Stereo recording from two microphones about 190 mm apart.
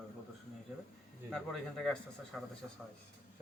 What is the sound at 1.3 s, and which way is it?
A man's voice, centre (ahead or behind).